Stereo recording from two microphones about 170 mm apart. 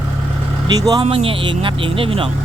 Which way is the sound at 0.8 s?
20° right (ahead or behind).